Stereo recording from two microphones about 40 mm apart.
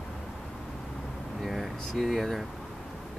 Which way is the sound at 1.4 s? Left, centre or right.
Centre.